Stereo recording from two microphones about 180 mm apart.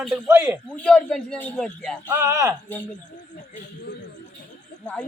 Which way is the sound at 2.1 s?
15° right (ahead or behind).